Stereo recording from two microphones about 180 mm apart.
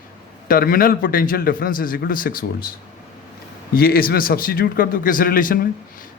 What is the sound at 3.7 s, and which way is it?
A man's voice, 55° left (ahead or behind).